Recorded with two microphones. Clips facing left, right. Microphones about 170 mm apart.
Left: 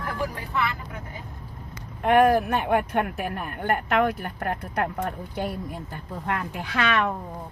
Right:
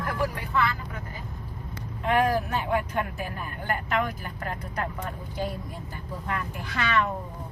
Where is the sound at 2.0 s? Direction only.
60° left (ahead or behind).